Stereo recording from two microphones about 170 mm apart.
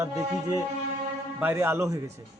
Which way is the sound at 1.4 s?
10° right (ahead or behind).